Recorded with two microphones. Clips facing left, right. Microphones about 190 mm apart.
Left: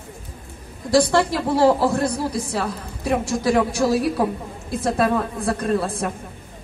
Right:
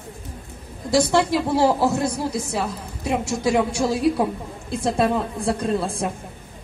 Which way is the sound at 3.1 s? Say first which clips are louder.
Left 2 dB; 25° right (ahead or behind).